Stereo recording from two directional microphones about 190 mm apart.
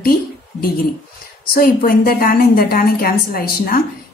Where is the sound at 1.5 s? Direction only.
50° left (ahead or behind).